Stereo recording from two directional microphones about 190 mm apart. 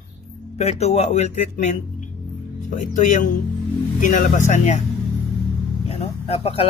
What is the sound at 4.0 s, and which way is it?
Speech, 40° left (ahead or behind).